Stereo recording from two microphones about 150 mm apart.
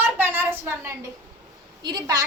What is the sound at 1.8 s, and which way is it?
Speech, 25° right (ahead or behind).